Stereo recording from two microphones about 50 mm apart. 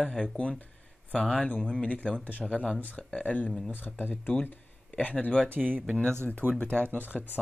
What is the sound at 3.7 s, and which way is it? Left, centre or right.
Speech, left.